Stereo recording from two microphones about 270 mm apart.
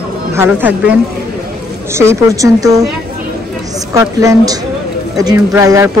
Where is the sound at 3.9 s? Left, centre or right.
Centre.